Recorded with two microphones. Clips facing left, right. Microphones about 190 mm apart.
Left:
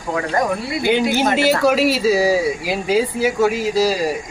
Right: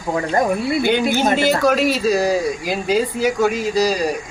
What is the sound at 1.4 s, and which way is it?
A man's voice, 5° left (ahead or behind).